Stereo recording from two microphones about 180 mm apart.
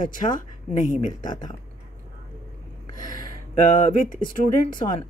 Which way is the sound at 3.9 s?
45° left (ahead or behind).